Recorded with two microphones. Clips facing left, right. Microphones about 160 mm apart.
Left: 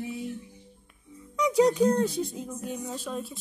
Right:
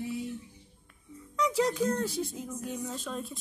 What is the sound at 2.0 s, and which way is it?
Speech, 20° left (ahead or behind).